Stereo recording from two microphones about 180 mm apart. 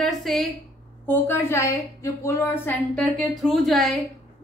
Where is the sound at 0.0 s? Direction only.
Centre (ahead or behind).